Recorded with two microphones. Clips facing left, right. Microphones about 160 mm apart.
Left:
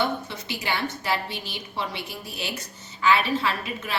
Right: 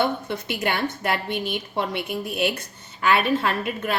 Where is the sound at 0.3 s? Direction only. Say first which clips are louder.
Right 5 dB; 55° right (ahead or behind).